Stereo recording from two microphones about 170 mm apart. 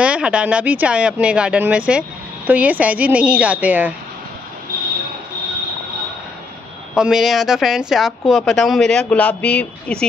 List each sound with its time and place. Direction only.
0.0 s speech: 5° right (ahead or behind)
7.0 s speech: centre (ahead or behind)